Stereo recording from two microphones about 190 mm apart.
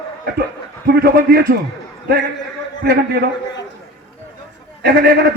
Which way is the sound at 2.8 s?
55° right (ahead or behind).